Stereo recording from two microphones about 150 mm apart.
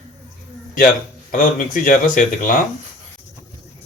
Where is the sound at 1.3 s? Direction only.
65° left (ahead or behind).